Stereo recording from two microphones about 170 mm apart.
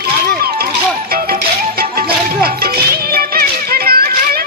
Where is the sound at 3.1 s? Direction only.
60° right (ahead or behind).